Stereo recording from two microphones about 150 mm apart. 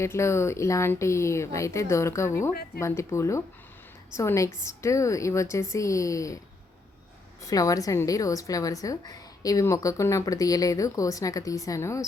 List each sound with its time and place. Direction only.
0.0 s a woman's voice: 20° left (ahead or behind)
7.4 s a woman's voice: 20° left (ahead or behind)